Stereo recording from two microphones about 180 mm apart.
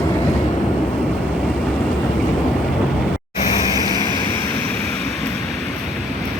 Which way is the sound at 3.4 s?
25° left (ahead or behind).